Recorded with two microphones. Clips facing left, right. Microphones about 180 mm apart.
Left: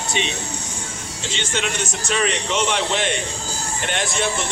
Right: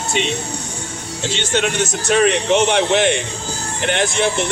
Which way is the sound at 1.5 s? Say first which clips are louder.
Right 7 dB; 60° right (ahead or behind).